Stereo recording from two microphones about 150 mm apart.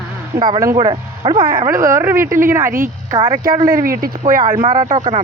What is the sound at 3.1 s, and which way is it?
Speech, 30° right (ahead or behind).